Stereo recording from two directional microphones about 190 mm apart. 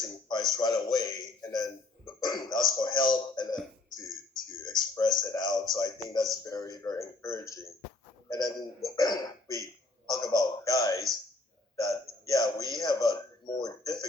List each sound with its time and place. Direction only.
0.0 s a man's voice: 20° left (ahead or behind)
3.9 s a sound: 20° left (ahead or behind)
5.7 s a man's voice: 20° left (ahead or behind)